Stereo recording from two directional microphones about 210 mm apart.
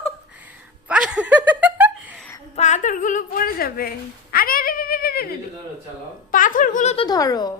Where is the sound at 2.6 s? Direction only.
35° left (ahead or behind).